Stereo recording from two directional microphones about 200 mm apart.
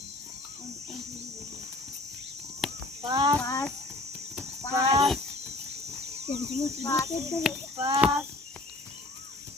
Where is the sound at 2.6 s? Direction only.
Centre (ahead or behind).